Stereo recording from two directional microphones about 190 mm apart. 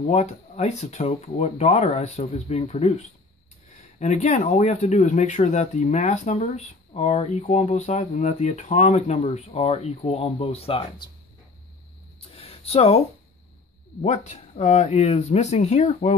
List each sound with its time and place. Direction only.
0.0 s speech: 35° left (ahead or behind)
4.0 s speech: 35° left (ahead or behind)
12.4 s a sound: 30° left (ahead or behind)
14.0 s speech: 40° left (ahead or behind)